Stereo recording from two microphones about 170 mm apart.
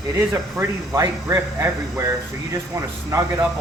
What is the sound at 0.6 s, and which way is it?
Speech, 15° right (ahead or behind).